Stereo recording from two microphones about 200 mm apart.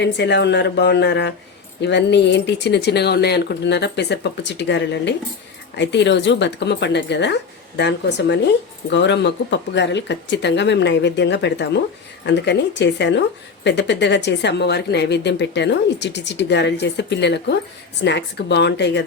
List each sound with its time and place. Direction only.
0.0 s speech: 60° left (ahead or behind)